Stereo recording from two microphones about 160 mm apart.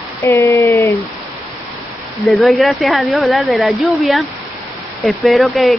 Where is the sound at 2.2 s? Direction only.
Centre (ahead or behind).